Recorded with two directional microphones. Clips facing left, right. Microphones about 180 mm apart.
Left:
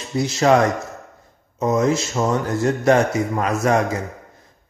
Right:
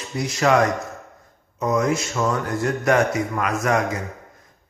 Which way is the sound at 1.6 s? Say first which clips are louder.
Left 3 dB; 25° left (ahead or behind).